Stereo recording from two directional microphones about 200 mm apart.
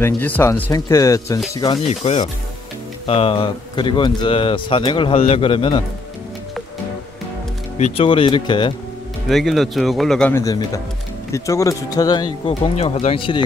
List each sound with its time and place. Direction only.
0.0 s speech: 10° left (ahead or behind)
1.9 s speech: 30° left (ahead or behind)
7.7 s speech: 30° left (ahead or behind)
9.3 s speech: centre (ahead or behind)
10.3 s speech: 15° left (ahead or behind)
12.4 s speech: 30° left (ahead or behind)